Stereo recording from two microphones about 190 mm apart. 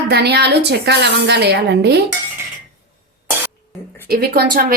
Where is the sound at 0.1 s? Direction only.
60° right (ahead or behind).